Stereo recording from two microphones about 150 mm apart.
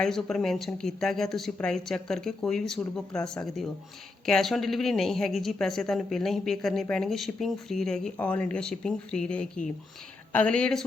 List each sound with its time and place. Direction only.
0.0 s speech: 5° left (ahead or behind)